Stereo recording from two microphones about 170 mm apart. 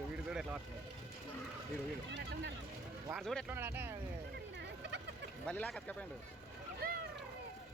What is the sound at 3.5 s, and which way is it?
Speech, 10° right (ahead or behind).